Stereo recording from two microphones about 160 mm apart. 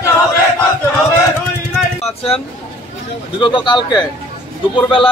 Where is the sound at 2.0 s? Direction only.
35° left (ahead or behind).